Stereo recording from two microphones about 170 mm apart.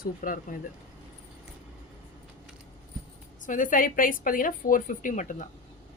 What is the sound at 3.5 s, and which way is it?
Speech, 50° left (ahead or behind).